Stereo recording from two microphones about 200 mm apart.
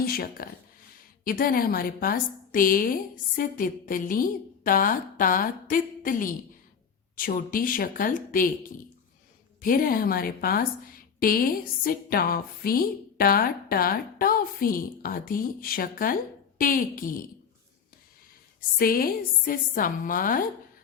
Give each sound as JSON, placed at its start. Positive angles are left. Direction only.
{"t": 0.0, "sound": "a woman's voice", "side_deg": 45}
{"t": 9.6, "sound": "a woman's voice", "side_deg": 45}
{"t": 18.8, "sound": "a woman's voice", "side_deg": 45}